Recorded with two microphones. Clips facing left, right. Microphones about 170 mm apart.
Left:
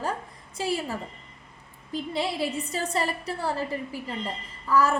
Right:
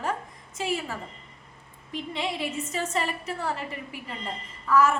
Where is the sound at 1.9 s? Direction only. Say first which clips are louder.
Left 2 dB; 35° left (ahead or behind).